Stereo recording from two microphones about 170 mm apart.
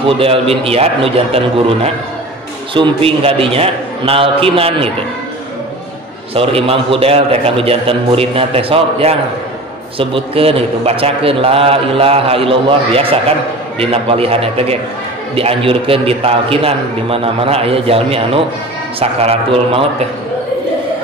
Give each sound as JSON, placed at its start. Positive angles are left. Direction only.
{"t": 0.0, "sound": "a man's voice", "side_deg": -35}
{"t": 6.3, "sound": "a man's voice", "side_deg": -35}